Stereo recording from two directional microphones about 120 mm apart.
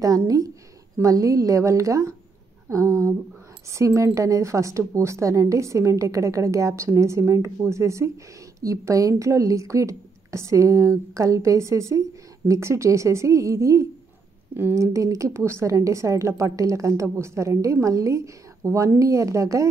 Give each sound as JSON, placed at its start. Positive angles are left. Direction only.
{"t": 0.0, "sound": "a woman's voice", "side_deg": -30}